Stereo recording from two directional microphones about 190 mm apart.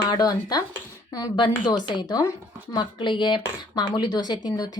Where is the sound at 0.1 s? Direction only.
20° left (ahead or behind).